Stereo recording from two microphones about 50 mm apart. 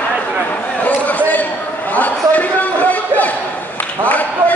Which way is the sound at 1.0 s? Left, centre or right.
Left.